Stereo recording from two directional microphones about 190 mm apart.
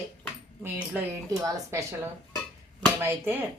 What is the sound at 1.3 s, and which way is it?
A woman's voice, 15° right (ahead or behind).